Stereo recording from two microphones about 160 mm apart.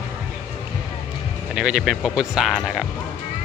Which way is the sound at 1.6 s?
5° right (ahead or behind).